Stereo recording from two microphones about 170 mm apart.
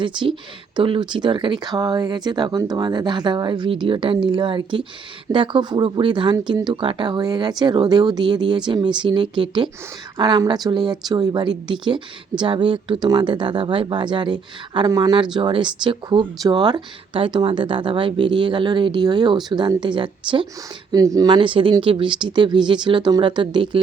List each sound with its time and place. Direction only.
0.0 s speech: 30° right (ahead or behind)